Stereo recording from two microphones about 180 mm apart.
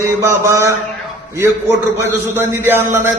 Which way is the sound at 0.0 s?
15° right (ahead or behind).